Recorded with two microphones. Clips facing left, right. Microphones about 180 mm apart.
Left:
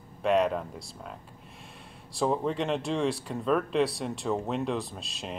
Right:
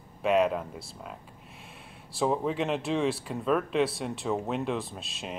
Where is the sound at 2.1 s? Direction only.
Centre (ahead or behind).